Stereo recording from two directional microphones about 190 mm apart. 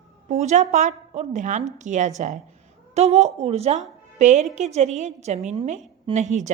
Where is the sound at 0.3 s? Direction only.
35° right (ahead or behind).